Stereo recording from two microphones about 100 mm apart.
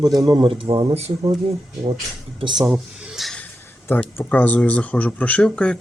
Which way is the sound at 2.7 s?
Centre (ahead or behind).